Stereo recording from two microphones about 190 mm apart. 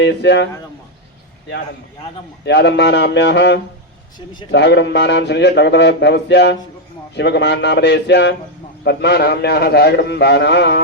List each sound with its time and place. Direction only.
0.0 s speech: 65° left (ahead or behind)
2.4 s speech: 65° left (ahead or behind)